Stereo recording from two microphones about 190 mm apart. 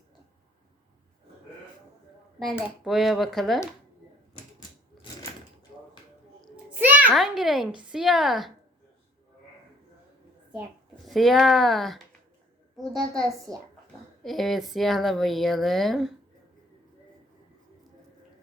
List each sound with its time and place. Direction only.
2.5 s speech: 5° right (ahead or behind)
6.4 s a sound: 10° right (ahead or behind)
7.1 s speech: centre (ahead or behind)
11.0 s speech: centre (ahead or behind)
13.5 s speech: 20° right (ahead or behind)
14.2 s speech: centre (ahead or behind)